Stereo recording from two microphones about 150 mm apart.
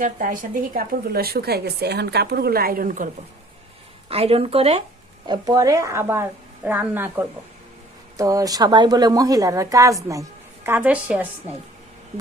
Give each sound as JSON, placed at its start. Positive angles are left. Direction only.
{"t": 0.0, "sound": "a woman's voice", "side_deg": -65}
{"t": 4.1, "sound": "speech", "side_deg": -40}
{"t": 5.2, "sound": "a woman's voice", "side_deg": -25}
{"t": 10.7, "sound": "speech", "side_deg": -10}